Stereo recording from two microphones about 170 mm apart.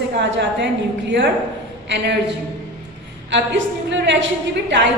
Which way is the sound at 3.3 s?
90° right.